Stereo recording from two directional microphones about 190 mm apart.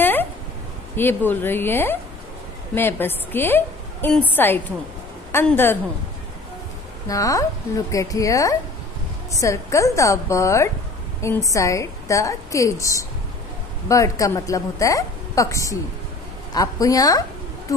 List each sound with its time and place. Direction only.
0.0 s a sound: 10° left (ahead or behind)
0.9 s a woman's voice: 10° left (ahead or behind)
7.1 s a woman's voice: 20° left (ahead or behind)